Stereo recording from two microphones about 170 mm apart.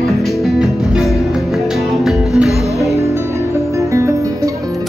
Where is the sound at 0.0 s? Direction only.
Centre (ahead or behind).